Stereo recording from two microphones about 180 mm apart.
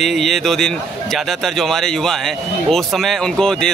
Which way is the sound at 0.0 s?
Centre (ahead or behind).